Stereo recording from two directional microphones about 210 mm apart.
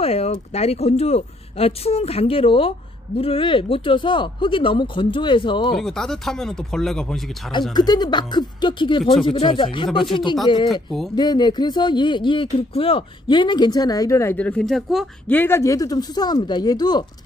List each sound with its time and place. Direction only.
0.0 s speech: 30° left (ahead or behind)
5.8 s speech: centre (ahead or behind)
7.7 s speech: 20° left (ahead or behind)
10.7 s speech: centre (ahead or behind)
11.1 s speech: 20° left (ahead or behind)